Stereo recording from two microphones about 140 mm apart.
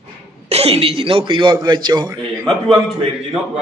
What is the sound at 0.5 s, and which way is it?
A man's voice, 45° right (ahead or behind).